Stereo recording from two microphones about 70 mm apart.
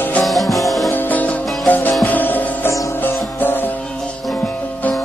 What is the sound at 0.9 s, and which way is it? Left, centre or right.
Music, left.